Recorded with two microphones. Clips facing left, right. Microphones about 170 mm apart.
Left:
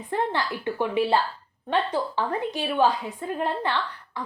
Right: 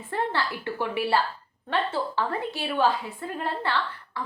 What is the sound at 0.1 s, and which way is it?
A woman's voice, 15° left (ahead or behind).